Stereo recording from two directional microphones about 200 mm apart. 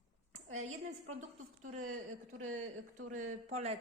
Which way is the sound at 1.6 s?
40° right (ahead or behind).